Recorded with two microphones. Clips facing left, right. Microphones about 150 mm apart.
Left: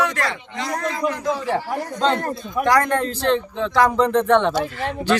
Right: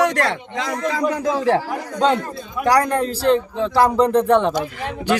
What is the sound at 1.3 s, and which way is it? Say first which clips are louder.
Speech: right 8 dB; 90° right.